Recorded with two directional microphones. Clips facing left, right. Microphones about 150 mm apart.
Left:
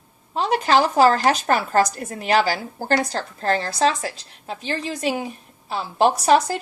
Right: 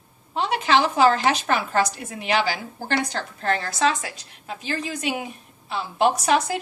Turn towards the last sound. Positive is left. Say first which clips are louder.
# left 4 dB
turn(degrees=35)  # may be behind; listen again after turning